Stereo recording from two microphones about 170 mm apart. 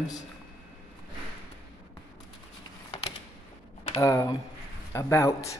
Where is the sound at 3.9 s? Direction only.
20° left (ahead or behind).